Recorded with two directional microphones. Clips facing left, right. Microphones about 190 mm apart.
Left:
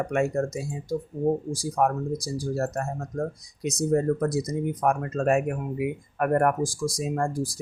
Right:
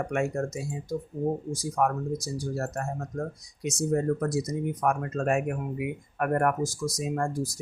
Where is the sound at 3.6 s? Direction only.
35° left (ahead or behind).